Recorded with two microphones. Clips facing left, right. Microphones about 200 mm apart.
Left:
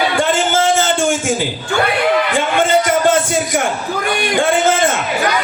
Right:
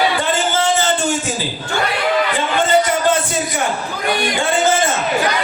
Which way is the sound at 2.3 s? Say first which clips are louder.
Left 1 dB; 50° left (ahead or behind).